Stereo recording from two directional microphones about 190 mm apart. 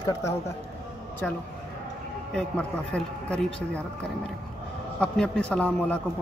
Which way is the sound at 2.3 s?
5° left (ahead or behind).